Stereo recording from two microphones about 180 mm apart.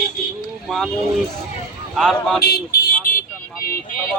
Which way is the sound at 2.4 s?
60° left (ahead or behind).